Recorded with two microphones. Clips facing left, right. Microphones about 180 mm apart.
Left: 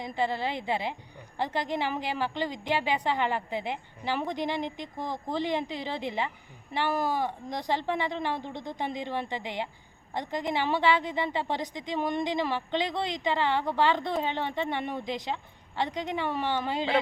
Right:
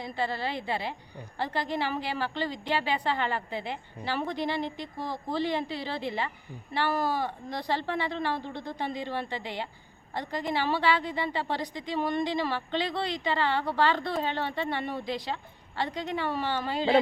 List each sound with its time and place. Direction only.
0.0 s a woman's voice: 15° left (ahead or behind)